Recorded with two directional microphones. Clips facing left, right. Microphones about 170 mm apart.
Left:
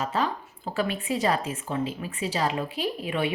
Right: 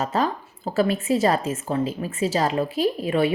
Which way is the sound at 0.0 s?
40° right (ahead or behind).